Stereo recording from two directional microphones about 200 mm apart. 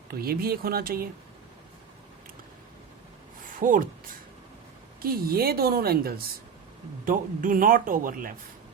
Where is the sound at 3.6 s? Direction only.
40° right (ahead or behind).